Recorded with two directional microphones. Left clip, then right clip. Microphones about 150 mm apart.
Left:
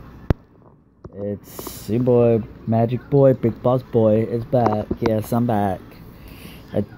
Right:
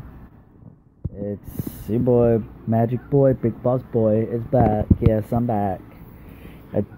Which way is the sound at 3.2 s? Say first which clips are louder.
Left 3 dB; 15° left (ahead or behind).